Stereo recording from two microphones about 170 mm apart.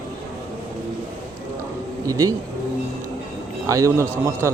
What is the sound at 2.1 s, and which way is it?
Speech, 20° right (ahead or behind).